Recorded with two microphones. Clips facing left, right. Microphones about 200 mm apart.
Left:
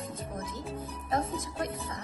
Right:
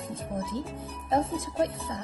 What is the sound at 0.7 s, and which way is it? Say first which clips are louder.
Speech: right 4 dB; 30° right (ahead or behind).